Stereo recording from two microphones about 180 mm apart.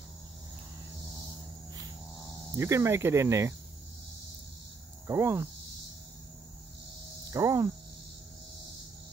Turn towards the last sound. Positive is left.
turn(degrees=-20)  # may be behind; listen again after turning